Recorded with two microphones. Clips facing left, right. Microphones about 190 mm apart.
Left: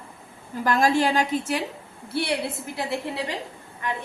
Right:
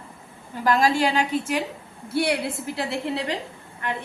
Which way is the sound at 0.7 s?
45° left (ahead or behind).